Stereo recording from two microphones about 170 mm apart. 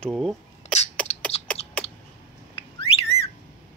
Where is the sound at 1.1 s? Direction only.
40° left (ahead or behind).